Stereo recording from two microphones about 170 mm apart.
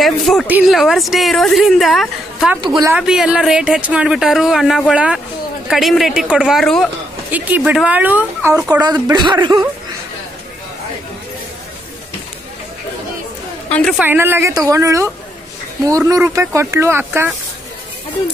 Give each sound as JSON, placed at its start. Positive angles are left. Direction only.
{"t": 0.0, "sound": "speech", "side_deg": 0}
{"t": 7.2, "sound": "speech", "side_deg": -10}
{"t": 8.8, "sound": "speech", "side_deg": -25}
{"t": 13.7, "sound": "a woman's voice", "side_deg": 10}
{"t": 13.9, "sound": "speech", "side_deg": -10}